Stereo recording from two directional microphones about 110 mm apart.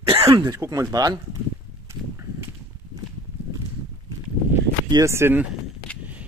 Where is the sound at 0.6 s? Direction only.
30° right (ahead or behind).